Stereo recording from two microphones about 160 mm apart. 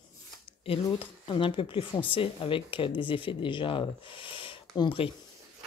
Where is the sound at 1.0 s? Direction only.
30° left (ahead or behind).